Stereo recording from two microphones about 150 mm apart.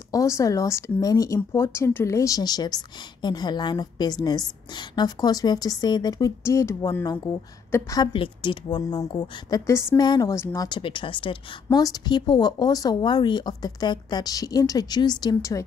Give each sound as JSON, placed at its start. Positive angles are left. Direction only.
{"t": 0.1, "sound": "speech", "side_deg": 20}
{"t": 8.1, "sound": "speech", "side_deg": 35}